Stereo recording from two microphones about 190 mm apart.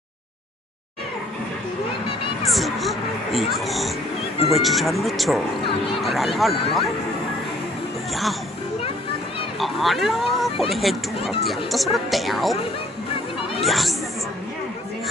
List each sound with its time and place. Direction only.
2.5 s a sound: centre (ahead or behind)
3.5 s speech: centre (ahead or behind)
9.6 s speech: centre (ahead or behind)
13.7 s speech: centre (ahead or behind)